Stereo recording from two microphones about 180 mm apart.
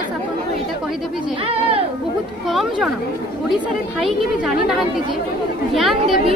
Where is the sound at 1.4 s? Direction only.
30° right (ahead or behind).